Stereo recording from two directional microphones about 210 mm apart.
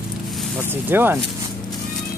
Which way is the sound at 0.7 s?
10° right (ahead or behind).